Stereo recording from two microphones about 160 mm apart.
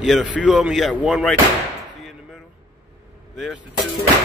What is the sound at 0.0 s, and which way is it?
Speech, centre (ahead or behind).